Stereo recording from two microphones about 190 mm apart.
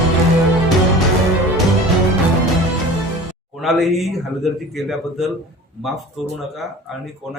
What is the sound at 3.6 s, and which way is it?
Speech, centre (ahead or behind).